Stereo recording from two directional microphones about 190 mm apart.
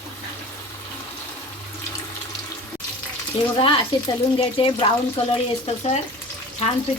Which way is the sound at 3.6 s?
25° left (ahead or behind).